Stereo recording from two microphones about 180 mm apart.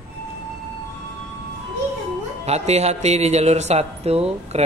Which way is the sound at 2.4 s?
35° right (ahead or behind).